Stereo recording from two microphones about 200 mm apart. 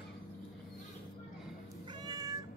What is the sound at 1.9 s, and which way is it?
Cat, 20° right (ahead or behind).